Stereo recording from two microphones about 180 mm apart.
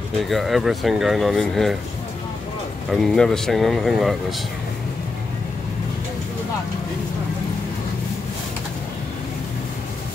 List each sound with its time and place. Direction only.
0.2 s speech: centre (ahead or behind)
2.9 s speech: centre (ahead or behind)